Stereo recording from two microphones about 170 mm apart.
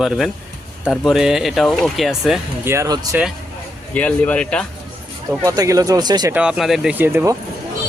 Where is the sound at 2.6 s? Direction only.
15° right (ahead or behind).